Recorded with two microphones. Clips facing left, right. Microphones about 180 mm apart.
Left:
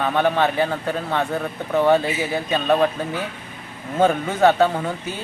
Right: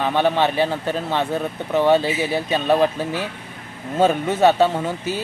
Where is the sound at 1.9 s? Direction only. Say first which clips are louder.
Right 2 dB; 25° right (ahead or behind).